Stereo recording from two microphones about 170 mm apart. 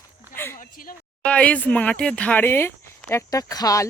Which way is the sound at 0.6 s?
55° left (ahead or behind).